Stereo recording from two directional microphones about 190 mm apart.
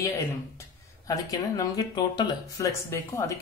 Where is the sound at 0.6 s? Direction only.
20° left (ahead or behind).